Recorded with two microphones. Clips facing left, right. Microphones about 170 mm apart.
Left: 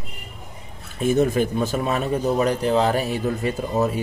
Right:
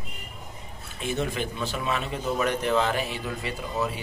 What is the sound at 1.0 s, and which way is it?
A man's voice, 45° left (ahead or behind).